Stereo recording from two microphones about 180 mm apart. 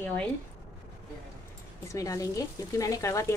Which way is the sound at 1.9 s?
20° left (ahead or behind).